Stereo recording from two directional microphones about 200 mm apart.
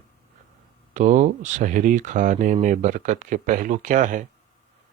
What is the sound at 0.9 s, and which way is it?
Speech, 35° right (ahead or behind).